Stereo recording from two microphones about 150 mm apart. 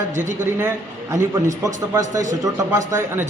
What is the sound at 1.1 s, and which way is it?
A man's voice, 20° right (ahead or behind).